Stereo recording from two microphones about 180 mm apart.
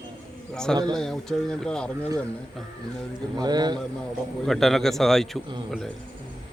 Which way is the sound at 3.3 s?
20° right (ahead or behind).